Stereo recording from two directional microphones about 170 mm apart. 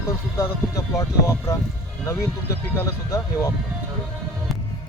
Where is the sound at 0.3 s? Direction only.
15° left (ahead or behind).